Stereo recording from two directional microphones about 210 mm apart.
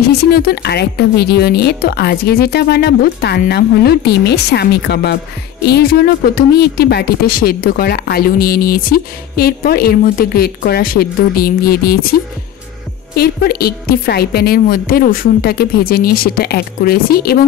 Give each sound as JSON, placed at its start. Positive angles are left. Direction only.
{"t": 0.3, "sound": "speech", "side_deg": 45}